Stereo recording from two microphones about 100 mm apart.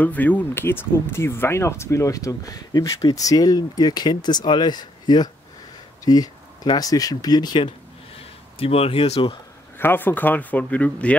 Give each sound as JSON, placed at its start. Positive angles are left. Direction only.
{"t": 0.0, "sound": "speech", "side_deg": 15}
{"t": 8.5, "sound": "speech", "side_deg": 75}
{"t": 9.8, "sound": "speech", "side_deg": 20}